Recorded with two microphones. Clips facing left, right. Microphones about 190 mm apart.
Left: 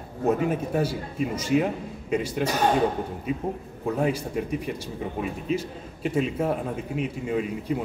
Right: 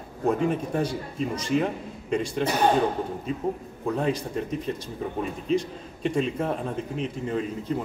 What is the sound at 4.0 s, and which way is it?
A man's voice, 10° left (ahead or behind).